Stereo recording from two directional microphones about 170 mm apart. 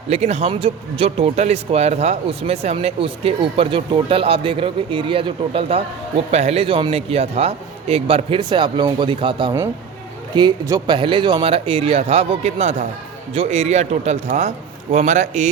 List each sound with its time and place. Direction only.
0.1 s a man's voice: 40° right (ahead or behind)